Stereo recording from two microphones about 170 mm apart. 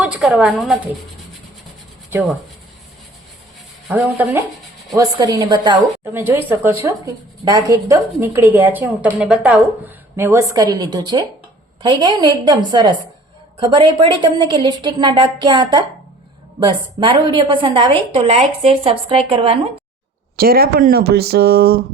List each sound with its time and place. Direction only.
0.0 s a woman's voice: 5° right (ahead or behind)
4.0 s a woman's voice: 10° right (ahead or behind)
4.9 s a woman's voice: 20° right (ahead or behind)
6.1 s a woman's voice: 15° right (ahead or behind); by 19.5 s 35° right (ahead or behind)
20.3 s speech: 60° right (ahead or behind)